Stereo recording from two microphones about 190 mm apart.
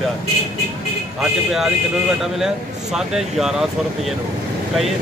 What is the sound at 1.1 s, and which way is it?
Speech, centre (ahead or behind).